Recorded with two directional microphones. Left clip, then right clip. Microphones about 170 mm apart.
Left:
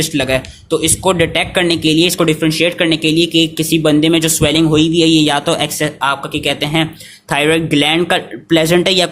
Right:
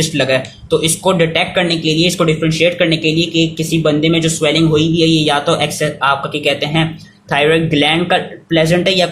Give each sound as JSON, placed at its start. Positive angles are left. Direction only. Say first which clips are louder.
{"t": 0.0, "sound": "speech", "louder": "right 1 dB", "side_deg": 35}